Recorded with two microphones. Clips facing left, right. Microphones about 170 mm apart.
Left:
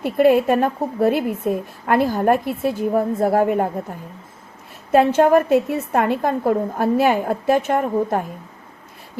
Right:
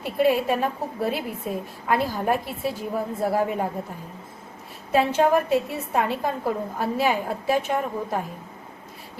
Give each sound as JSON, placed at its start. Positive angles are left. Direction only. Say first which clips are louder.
{"t": 0.0, "sound": "a woman's voice", "louder": "left 6 dB", "side_deg": 50}
{"t": 4.9, "sound": "a woman's voice", "louder": "left 6 dB", "side_deg": 55}